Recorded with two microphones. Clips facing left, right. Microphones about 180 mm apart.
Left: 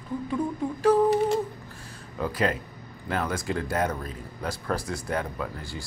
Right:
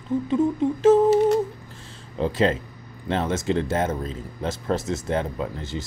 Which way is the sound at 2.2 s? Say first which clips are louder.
Right 5 dB; 25° right (ahead or behind).